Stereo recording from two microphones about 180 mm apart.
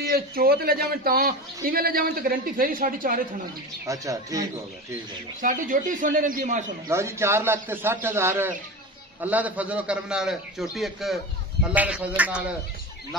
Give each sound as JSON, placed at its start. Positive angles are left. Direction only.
{"t": 0.1, "sound": "a man's voice", "side_deg": -55}
{"t": 3.8, "sound": "a man's voice", "side_deg": -20}
{"t": 5.4, "sound": "a man's voice", "side_deg": -45}
{"t": 6.9, "sound": "a man's voice", "side_deg": -15}